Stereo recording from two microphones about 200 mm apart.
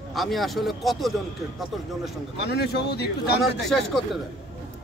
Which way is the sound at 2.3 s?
55° left (ahead or behind).